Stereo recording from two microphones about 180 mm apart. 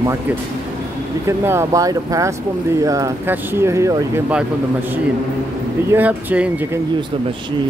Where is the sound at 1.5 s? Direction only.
15° right (ahead or behind).